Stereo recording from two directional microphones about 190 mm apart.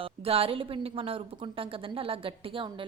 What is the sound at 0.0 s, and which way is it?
A woman's voice, 30° right (ahead or behind).